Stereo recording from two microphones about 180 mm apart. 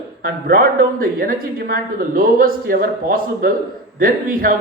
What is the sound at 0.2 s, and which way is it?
Speech, 55° right (ahead or behind).